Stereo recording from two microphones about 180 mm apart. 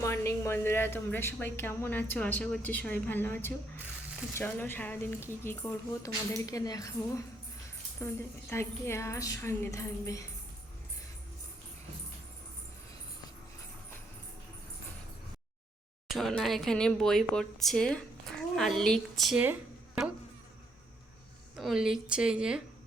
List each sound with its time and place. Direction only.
0.0 s a woman's voice: 15° left (ahead or behind)
8.0 s a woman's voice: 15° left (ahead or behind)
16.0 s speech: centre (ahead or behind)
21.5 s speech: centre (ahead or behind)